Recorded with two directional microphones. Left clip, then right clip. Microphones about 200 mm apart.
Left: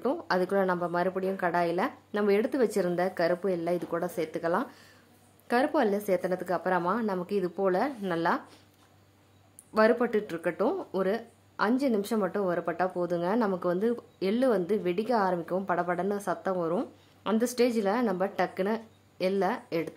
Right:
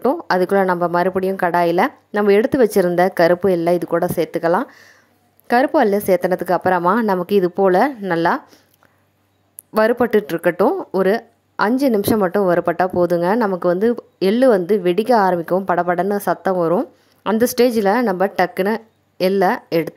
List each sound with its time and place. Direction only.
0.0 s a woman's voice: 35° right (ahead or behind)
9.8 s a woman's voice: 40° right (ahead or behind)